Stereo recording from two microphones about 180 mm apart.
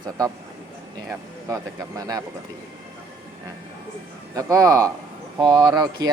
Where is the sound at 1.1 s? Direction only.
15° right (ahead or behind).